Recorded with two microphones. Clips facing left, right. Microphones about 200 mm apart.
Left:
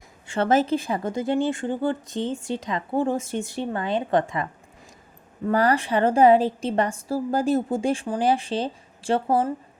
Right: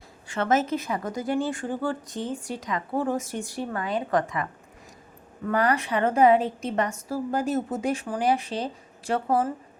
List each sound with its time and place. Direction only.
0.3 s speech: 30° left (ahead or behind)
5.5 s a woman's voice: 30° left (ahead or behind)